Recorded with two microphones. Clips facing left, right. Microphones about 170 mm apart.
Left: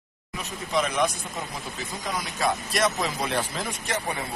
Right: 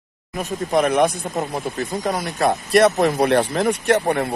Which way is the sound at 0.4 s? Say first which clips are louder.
Right 8 dB; 55° right (ahead or behind).